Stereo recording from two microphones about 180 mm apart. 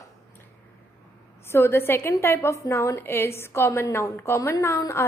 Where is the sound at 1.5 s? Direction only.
15° left (ahead or behind).